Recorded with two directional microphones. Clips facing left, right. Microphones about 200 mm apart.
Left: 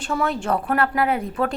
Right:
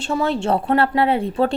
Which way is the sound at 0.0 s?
25° right (ahead or behind).